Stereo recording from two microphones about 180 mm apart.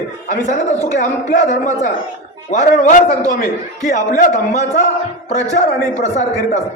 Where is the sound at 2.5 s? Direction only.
40° left (ahead or behind).